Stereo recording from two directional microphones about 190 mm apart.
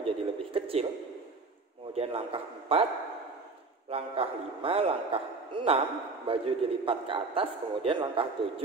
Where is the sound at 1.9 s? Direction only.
30° right (ahead or behind).